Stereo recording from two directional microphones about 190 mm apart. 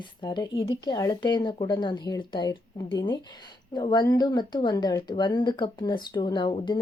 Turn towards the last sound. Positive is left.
turn(degrees=25)  # may be behind; listen again after turning